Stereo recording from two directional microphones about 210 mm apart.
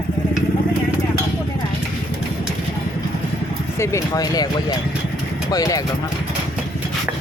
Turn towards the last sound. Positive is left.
turn(degrees=15)  # may be behind; listen again after turning